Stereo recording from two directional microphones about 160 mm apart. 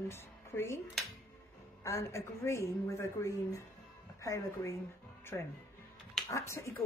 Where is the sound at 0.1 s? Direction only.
15° left (ahead or behind).